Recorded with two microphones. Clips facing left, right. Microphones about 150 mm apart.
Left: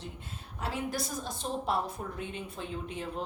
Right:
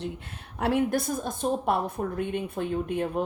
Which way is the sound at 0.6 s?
60° right (ahead or behind).